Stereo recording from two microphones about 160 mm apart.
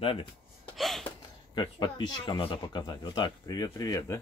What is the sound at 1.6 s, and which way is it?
Speech, 30° left (ahead or behind).